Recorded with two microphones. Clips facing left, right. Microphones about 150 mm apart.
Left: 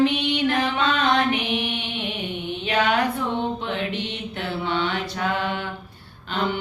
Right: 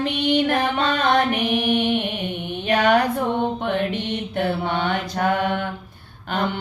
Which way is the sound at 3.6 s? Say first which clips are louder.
Right 4 dB; 55° right (ahead or behind).